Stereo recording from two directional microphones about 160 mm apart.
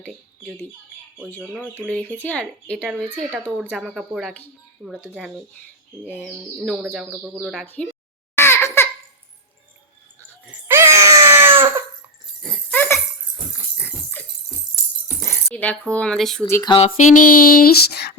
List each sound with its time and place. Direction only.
0.0 s speech: 5° right (ahead or behind)
1.9 s speech: 10° left (ahead or behind)
6.6 s speech: centre (ahead or behind)
7.6 s speech: 10° left (ahead or behind)
8.4 s laughter: 15° left (ahead or behind)
10.7 s baby cry: 15° right (ahead or behind)
12.4 s jingle bell: 10° left (ahead or behind)
13.7 s dog: 10° left (ahead or behind)
15.0 s a sound: 10° left (ahead or behind)
16.6 s a sound: 35° left (ahead or behind)
17.1 s a sound: 55° left (ahead or behind); by 18.1 s 80° left